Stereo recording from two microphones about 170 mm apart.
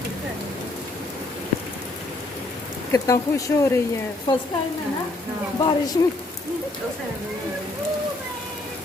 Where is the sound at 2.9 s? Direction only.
20° left (ahead or behind).